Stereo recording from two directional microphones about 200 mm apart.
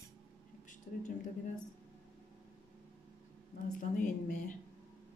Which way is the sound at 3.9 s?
40° left (ahead or behind).